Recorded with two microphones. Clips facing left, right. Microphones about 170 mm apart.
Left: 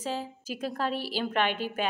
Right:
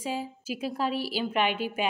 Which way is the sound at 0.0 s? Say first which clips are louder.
Right 1 dB; 10° right (ahead or behind).